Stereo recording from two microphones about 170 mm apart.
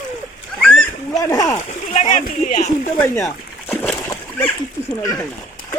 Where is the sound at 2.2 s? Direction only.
45° left (ahead or behind).